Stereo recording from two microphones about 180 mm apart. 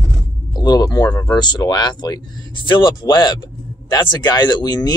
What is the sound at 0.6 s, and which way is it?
Speech, 20° left (ahead or behind).